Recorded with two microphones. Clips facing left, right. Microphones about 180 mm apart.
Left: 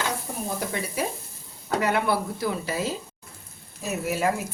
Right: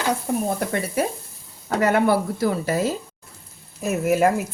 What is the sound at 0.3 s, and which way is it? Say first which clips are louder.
Speech: right 10 dB; 70° right (ahead or behind).